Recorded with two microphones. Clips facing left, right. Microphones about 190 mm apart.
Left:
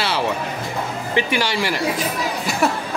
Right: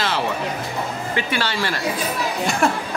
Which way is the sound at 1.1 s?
15° left (ahead or behind).